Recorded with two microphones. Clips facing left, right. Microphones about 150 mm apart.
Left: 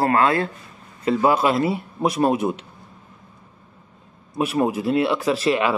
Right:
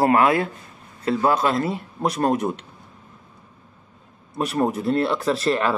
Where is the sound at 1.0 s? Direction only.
Centre (ahead or behind).